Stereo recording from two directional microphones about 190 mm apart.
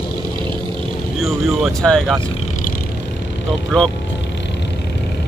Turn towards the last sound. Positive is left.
turn(degrees=5)  # may be behind; listen again after turning